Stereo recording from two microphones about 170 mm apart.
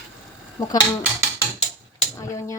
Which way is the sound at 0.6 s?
20° left (ahead or behind).